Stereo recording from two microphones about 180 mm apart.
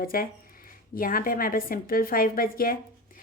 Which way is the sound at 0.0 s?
55° left (ahead or behind).